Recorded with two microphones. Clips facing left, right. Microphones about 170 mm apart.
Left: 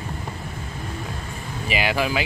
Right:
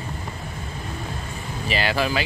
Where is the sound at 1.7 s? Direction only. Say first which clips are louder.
Even; 15° left (ahead or behind).